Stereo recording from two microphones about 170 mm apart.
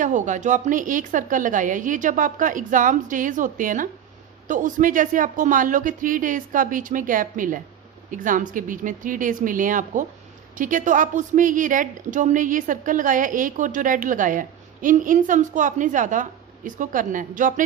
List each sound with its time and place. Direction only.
0.0 s a woman's voice: 45° right (ahead or behind)